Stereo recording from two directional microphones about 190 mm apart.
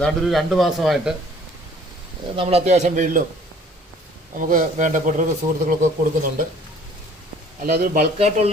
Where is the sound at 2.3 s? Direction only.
30° right (ahead or behind).